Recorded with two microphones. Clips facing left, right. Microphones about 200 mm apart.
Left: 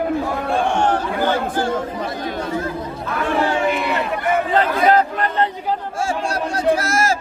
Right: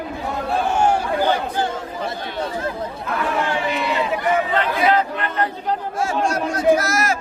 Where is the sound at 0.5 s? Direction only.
5° right (ahead or behind).